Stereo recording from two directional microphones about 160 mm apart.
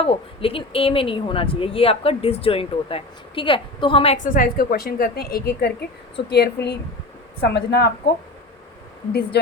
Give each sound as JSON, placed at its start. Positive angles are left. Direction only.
{"t": 0.0, "sound": "speech", "side_deg": 35}
{"t": 4.4, "sound": "a woman's voice", "side_deg": 70}
{"t": 6.1, "sound": "a woman's voice", "side_deg": 90}
{"t": 9.3, "sound": "a woman's voice", "side_deg": 90}